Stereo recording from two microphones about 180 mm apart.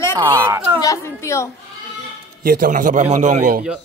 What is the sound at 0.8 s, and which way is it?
Speech, 15° left (ahead or behind).